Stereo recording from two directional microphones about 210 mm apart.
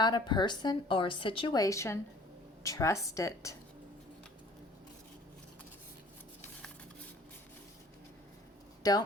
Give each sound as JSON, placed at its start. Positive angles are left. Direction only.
{"t": 0.0, "sound": "a woman's voice", "side_deg": 20}
{"t": 8.8, "sound": "speech", "side_deg": 15}